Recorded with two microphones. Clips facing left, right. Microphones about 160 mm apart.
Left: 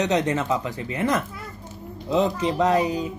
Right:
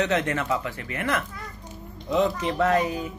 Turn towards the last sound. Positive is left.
turn(degrees=15)  # may be behind; listen again after turning